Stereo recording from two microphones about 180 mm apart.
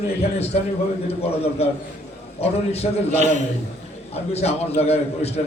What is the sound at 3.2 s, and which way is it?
Speech, 40° right (ahead or behind).